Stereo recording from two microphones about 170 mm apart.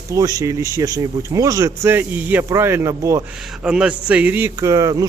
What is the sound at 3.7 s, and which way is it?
A man's voice, 5° right (ahead or behind).